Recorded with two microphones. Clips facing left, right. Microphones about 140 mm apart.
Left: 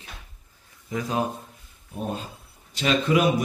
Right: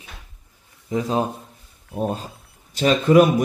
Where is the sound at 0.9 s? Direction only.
30° right (ahead or behind).